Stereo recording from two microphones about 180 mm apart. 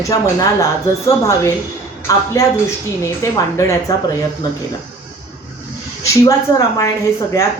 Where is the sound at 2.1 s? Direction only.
15° left (ahead or behind).